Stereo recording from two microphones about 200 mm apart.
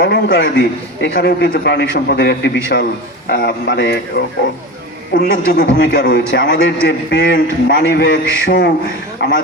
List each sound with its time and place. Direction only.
0.0 s a man's voice: 60° left (ahead or behind)
5.1 s a man's voice: 50° left (ahead or behind)